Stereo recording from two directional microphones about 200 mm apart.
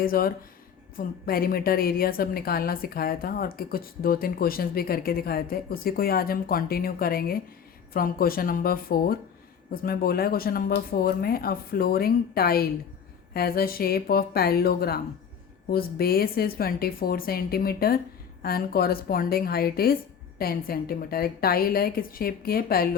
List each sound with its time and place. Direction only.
0.0 s a woman's voice: 45° left (ahead or behind)